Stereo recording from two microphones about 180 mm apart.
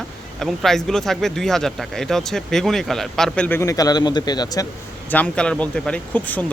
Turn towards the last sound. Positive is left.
turn(degrees=10)  # may be behind; listen again after turning